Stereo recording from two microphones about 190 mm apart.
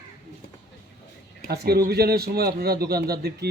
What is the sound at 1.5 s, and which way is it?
A man's voice, 55° right (ahead or behind).